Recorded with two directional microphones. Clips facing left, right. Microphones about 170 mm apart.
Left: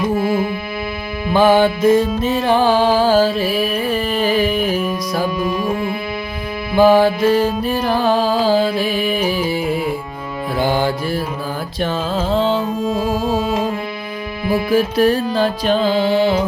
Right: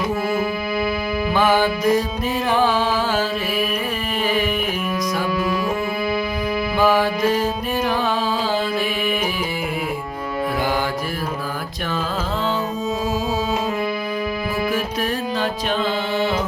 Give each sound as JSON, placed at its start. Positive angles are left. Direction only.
{"t": 1.3, "sound": "music", "side_deg": 30}
{"t": 6.7, "sound": "music", "side_deg": 30}
{"t": 10.6, "sound": "mantra", "side_deg": 30}
{"t": 12.3, "sound": "music", "side_deg": 30}
{"t": 14.7, "sound": "music", "side_deg": 30}